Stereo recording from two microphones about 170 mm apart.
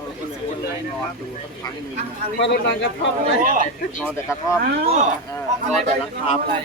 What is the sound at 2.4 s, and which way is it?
Speech, 85° left.